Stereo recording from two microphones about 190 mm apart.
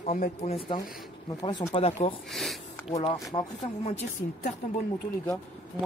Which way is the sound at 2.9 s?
25° left (ahead or behind).